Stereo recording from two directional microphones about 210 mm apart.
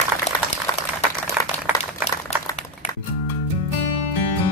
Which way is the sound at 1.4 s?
5° right (ahead or behind).